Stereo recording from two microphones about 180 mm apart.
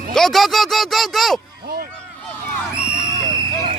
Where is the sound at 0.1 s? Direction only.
Centre (ahead or behind).